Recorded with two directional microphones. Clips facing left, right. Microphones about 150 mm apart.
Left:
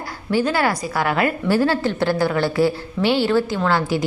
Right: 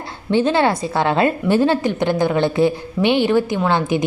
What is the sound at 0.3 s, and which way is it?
A woman's voice, 25° right (ahead or behind).